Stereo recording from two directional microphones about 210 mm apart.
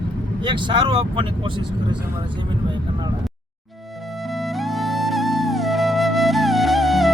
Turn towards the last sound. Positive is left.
turn(degrees=0)  # may be behind; listen again after turning